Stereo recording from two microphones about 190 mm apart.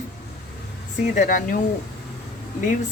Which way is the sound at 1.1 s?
45° left (ahead or behind).